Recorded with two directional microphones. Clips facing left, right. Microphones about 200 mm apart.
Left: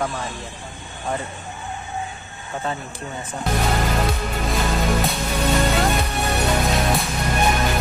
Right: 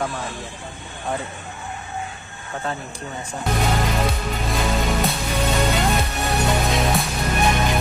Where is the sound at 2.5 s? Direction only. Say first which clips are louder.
Left 1 dB; centre (ahead or behind).